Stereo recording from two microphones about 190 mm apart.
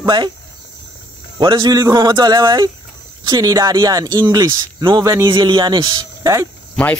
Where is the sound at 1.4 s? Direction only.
25° right (ahead or behind).